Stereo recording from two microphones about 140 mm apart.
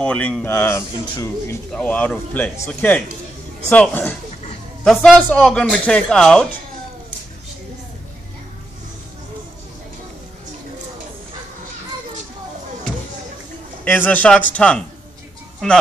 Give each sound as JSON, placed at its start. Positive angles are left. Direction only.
{"t": 0.0, "sound": "speech", "side_deg": 10}
{"t": 1.7, "sound": "speech", "side_deg": 10}
{"t": 13.8, "sound": "speech", "side_deg": 15}